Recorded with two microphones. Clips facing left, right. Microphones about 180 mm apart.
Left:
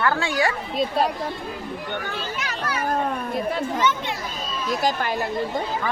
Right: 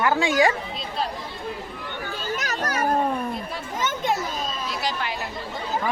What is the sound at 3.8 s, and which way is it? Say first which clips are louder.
Speech: left 1 dB; 45° right (ahead or behind).